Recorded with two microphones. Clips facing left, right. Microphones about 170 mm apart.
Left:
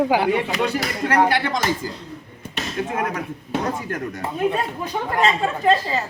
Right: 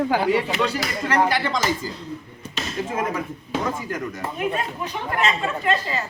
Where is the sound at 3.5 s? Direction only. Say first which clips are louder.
Left 2 dB; 60° left (ahead or behind).